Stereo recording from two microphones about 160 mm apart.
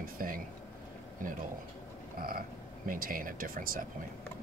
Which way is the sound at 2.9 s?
60° right (ahead or behind).